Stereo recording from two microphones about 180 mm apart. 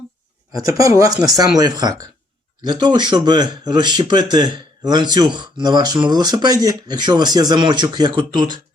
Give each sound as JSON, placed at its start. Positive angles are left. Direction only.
{"t": 0.5, "sound": "speech", "side_deg": -20}